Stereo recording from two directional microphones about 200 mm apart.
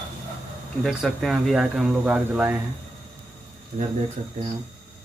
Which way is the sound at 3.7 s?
35° right (ahead or behind).